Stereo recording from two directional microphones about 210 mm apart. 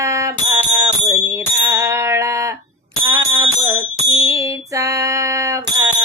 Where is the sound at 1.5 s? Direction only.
15° right (ahead or behind).